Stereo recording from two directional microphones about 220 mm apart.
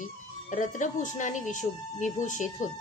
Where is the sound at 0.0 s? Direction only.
35° left (ahead or behind).